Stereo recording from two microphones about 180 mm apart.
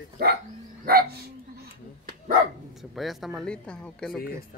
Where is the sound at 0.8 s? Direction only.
60° right (ahead or behind).